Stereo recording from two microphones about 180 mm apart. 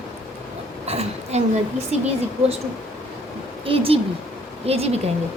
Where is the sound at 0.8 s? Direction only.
35° right (ahead or behind).